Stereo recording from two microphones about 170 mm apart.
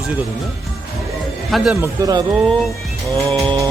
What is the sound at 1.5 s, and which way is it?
Speech, 5° right (ahead or behind).